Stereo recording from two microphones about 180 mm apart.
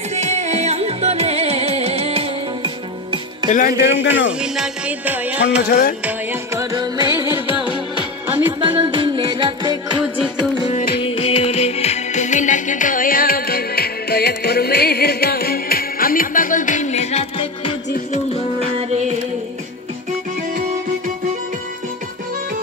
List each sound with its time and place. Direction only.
0.1 s music: 40° right (ahead or behind)
3.4 s speech: 45° left (ahead or behind)
4.4 s music: 5° right (ahead or behind)
5.7 s music: 55° left (ahead or behind)
6.0 s music: 15° right (ahead or behind)
8.5 s music: 30° right (ahead or behind)
10.6 s music: 35° left (ahead or behind)
18.8 s music: 35° right (ahead or behind)